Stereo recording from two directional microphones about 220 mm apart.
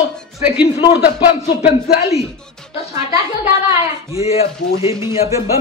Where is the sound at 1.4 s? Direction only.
45° left (ahead or behind).